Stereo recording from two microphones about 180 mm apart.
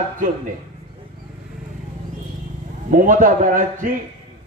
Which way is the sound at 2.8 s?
45° right (ahead or behind).